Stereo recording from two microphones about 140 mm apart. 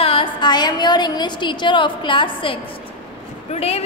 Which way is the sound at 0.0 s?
40° left (ahead or behind).